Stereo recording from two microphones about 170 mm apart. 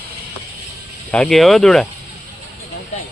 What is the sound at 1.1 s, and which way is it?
Speech, 5° left (ahead or behind).